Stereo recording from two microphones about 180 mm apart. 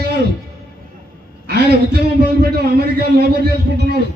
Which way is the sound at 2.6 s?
65° right (ahead or behind).